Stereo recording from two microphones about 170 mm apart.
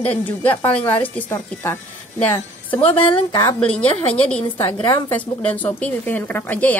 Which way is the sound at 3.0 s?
30° left (ahead or behind).